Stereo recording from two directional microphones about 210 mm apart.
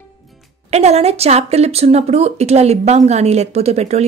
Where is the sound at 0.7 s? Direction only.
30° right (ahead or behind).